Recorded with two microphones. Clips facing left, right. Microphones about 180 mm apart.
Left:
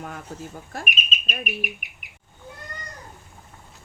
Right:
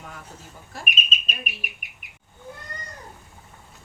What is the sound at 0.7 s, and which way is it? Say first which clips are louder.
Speech: left 3 dB; 55° left (ahead or behind).